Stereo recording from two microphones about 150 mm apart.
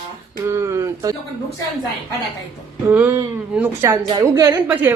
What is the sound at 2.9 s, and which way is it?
Speech, 10° right (ahead or behind).